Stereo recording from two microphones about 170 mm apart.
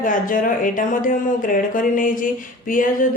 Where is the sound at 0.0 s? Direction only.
50° left (ahead or behind).